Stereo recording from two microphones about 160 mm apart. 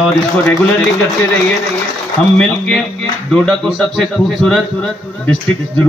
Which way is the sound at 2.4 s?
5° left (ahead or behind).